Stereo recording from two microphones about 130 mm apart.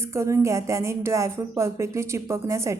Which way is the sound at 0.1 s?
20° right (ahead or behind).